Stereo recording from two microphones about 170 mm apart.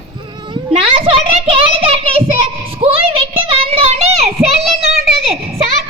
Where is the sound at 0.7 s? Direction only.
35° right (ahead or behind).